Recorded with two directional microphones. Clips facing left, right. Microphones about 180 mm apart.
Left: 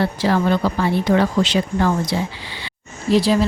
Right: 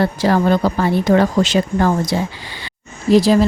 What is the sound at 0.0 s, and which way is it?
Speech, 45° right (ahead or behind).